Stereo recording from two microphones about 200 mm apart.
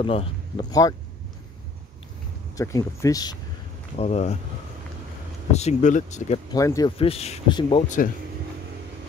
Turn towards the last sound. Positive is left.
turn(degrees=30)  # may be behind; listen again after turning